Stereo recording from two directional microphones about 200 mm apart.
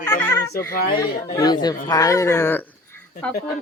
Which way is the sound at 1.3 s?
20° left (ahead or behind).